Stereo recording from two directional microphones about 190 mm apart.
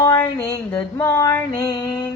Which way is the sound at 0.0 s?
15° left (ahead or behind).